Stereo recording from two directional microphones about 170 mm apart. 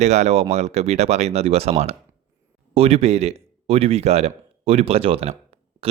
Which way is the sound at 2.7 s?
35° right (ahead or behind).